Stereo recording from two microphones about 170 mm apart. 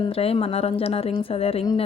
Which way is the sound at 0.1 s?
35° left (ahead or behind).